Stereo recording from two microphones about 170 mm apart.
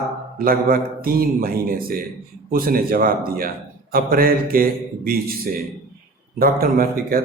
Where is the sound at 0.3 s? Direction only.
60° right (ahead or behind).